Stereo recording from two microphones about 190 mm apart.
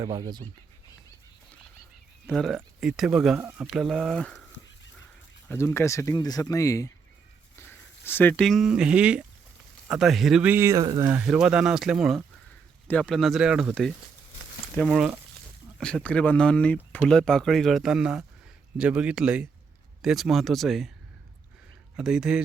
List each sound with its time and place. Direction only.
0.0 s speech: 20° right (ahead or behind)
2.2 s speech: centre (ahead or behind)
5.5 s speech: 15° left (ahead or behind); by 11.1 s 20° right (ahead or behind)
11.1 s speech: 5° right (ahead or behind)
21.9 s speech: 5° right (ahead or behind)